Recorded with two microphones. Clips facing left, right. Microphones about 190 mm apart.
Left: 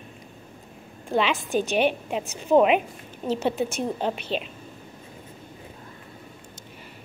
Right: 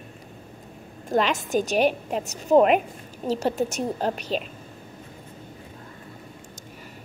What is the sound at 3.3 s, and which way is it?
A woman's voice, 40° right (ahead or behind).